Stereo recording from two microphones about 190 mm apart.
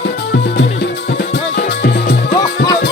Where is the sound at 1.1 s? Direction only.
60° left (ahead or behind).